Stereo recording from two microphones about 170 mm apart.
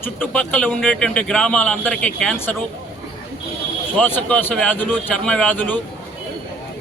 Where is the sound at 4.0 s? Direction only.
10° left (ahead or behind).